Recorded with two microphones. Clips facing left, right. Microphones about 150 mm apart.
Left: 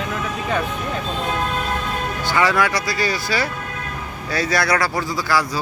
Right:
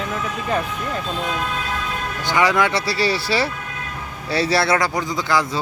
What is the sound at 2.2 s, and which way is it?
Speech, 15° right (ahead or behind).